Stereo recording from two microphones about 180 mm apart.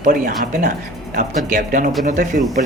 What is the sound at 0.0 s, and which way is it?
Speech, 50° right (ahead or behind).